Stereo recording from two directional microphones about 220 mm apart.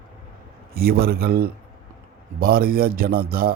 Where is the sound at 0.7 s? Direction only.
40° right (ahead or behind).